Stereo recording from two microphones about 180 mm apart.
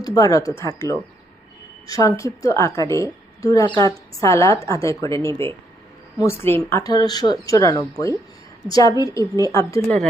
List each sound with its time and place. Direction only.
0.0 s a woman's voice: 20° left (ahead or behind)